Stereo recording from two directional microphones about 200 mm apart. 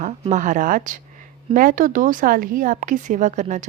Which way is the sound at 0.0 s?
40° right (ahead or behind).